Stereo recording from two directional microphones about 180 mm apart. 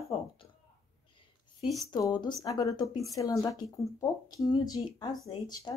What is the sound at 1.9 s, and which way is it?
Speech, 25° left (ahead or behind).